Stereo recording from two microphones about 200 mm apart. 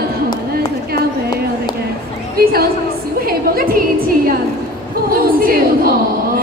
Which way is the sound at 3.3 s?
45° right (ahead or behind).